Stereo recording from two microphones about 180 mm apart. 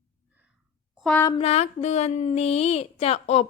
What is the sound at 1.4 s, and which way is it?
Speech, 35° left (ahead or behind).